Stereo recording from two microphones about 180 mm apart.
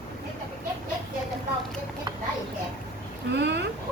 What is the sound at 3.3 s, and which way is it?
Speech, 70° right (ahead or behind).